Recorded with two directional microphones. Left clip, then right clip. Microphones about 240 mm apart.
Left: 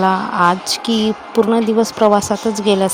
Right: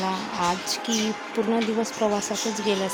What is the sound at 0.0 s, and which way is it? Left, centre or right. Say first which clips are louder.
A woman's voice: left 12 dB; left.